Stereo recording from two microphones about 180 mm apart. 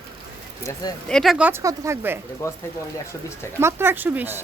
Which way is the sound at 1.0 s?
Centre (ahead or behind).